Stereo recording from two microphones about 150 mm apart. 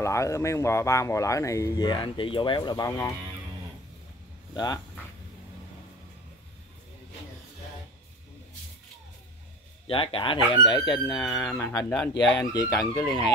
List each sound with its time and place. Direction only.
0.0 s speech: 20° left (ahead or behind)
9.8 s speech: 35° left (ahead or behind)
11.5 s speech: 15° left (ahead or behind)
11.9 s speech: 5° left (ahead or behind)
12.4 s speech: 20° left (ahead or behind)
12.9 s speech: 10° left (ahead or behind)